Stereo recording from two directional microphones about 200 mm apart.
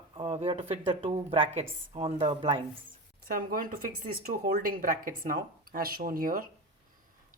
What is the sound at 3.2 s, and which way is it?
Speech, 45° right (ahead or behind).